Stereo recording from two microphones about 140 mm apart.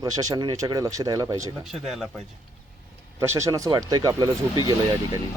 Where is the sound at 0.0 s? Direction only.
25° right (ahead or behind).